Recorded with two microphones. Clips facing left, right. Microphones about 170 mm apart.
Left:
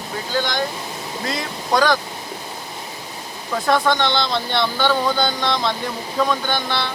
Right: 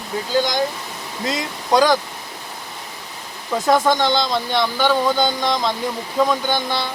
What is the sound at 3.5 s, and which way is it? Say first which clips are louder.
Speech: right 2 dB; 20° right (ahead or behind).